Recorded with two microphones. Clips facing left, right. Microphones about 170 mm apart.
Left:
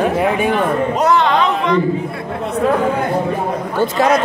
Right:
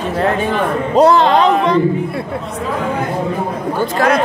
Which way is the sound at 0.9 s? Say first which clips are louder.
Right 7 dB; 30° right (ahead or behind).